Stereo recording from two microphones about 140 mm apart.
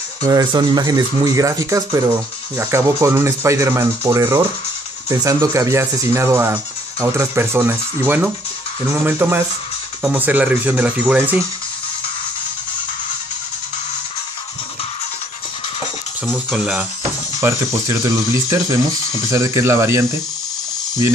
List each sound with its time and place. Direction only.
0.2 s speech: 25° right (ahead or behind)
16.3 s speech: centre (ahead or behind)
17.4 s speech: 20° right (ahead or behind)